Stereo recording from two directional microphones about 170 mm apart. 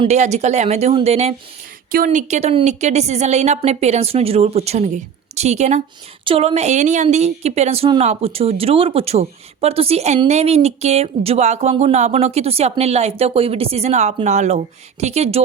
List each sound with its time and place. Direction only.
0.0 s speech: 40° right (ahead or behind)